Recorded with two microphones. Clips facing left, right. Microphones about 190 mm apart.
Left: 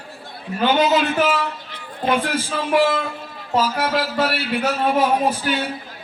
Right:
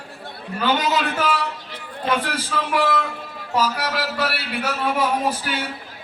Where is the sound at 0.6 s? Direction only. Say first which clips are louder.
Left 4 dB; 20° left (ahead or behind).